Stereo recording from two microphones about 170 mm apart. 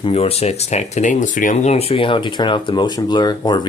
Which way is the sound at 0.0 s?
35° left (ahead or behind).